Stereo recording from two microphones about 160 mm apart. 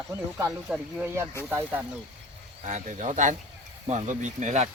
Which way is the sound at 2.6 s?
50° right (ahead or behind).